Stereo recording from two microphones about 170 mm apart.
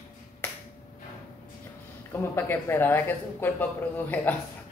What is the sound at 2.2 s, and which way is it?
Speech, 15° left (ahead or behind).